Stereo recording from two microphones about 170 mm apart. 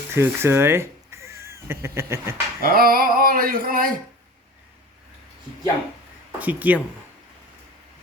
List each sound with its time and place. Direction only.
0.1 s speech: 15° right (ahead or behind)
2.6 s a sound: 60° right (ahead or behind)
6.4 s speech: 10° right (ahead or behind)